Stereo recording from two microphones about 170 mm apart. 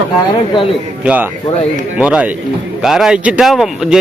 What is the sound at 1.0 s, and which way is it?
A man's voice, 10° right (ahead or behind).